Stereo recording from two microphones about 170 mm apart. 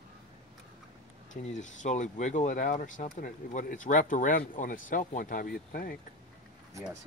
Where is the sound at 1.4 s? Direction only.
45° left (ahead or behind); by 6.0 s 60° left (ahead or behind).